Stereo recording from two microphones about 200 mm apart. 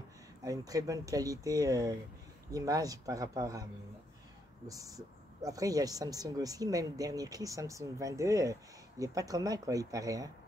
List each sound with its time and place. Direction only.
0.4 s speech: 15° right (ahead or behind)
4.6 s speech: 15° right (ahead or behind)